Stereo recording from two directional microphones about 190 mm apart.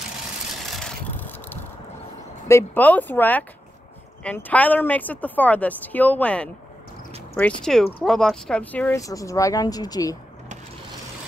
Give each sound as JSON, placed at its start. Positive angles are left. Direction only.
{"t": 0.7, "sound": "vehicle", "side_deg": 0}
{"t": 2.4, "sound": "speech", "side_deg": 10}